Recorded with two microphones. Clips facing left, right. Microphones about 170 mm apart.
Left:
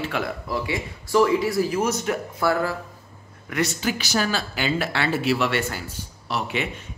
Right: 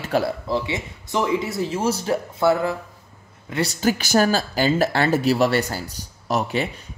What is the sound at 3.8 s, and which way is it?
Speech, 50° right (ahead or behind).